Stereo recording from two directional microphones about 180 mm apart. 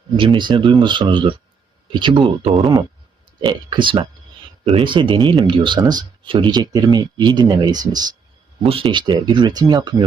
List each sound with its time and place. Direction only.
0.2 s speech: 30° right (ahead or behind)